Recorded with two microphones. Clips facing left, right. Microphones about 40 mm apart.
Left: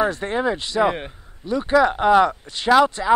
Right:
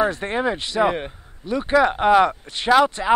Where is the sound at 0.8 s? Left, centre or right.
Centre.